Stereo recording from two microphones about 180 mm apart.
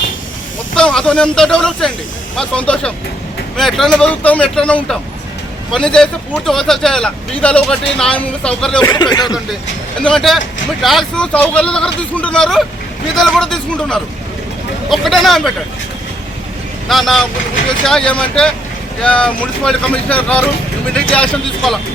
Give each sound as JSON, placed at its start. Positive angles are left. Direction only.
{"t": 0.8, "sound": "speech", "side_deg": 5}
{"t": 8.8, "sound": "speech", "side_deg": 25}
{"t": 10.0, "sound": "speech", "side_deg": 5}
{"t": 16.9, "sound": "speech", "side_deg": 0}